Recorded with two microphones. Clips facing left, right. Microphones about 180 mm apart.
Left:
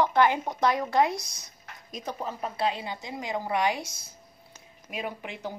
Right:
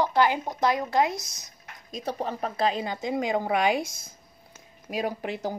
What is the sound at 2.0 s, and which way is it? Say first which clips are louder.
Speech: right 4 dB; 65° right (ahead or behind).